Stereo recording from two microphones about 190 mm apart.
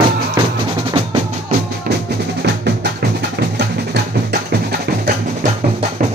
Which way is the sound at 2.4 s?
60° right (ahead or behind).